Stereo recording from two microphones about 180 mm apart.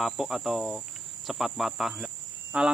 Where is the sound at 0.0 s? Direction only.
Centre (ahead or behind).